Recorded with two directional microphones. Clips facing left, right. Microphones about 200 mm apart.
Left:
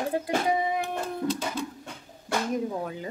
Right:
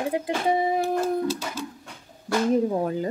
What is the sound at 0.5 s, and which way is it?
Speech, 30° right (ahead or behind).